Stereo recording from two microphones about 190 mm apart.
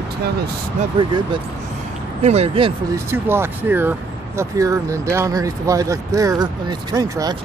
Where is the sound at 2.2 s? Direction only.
35° right (ahead or behind).